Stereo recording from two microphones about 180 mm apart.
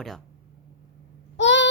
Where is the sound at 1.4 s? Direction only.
85° left.